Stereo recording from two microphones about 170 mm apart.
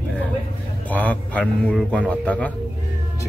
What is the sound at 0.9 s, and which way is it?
A man's voice, 10° left (ahead or behind).